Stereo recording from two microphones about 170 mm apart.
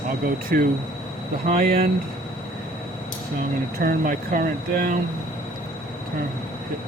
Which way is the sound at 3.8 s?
55° right (ahead or behind).